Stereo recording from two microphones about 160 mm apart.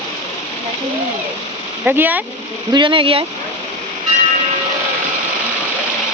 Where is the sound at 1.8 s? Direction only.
10° right (ahead or behind).